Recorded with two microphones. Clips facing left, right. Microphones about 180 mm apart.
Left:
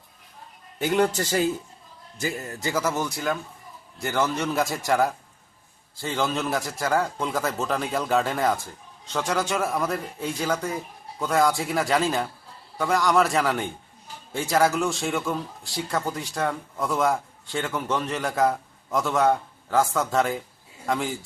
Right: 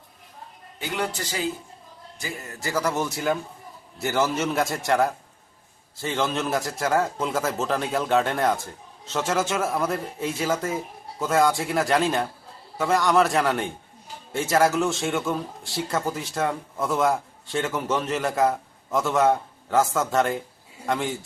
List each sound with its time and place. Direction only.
0.8 s a man's voice: 45° left (ahead or behind)
2.6 s a man's voice: 20° left (ahead or behind)
2.8 s a man's voice: centre (ahead or behind)